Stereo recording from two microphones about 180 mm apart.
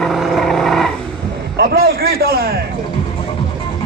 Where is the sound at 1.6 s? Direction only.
60° right (ahead or behind).